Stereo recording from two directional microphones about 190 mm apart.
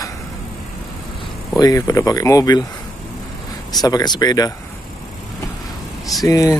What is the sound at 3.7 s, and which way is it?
Speech, 20° left (ahead or behind).